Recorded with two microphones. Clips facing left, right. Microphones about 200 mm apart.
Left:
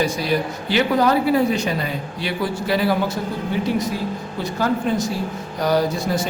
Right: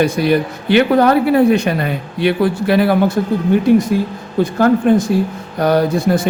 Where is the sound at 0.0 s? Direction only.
60° right (ahead or behind).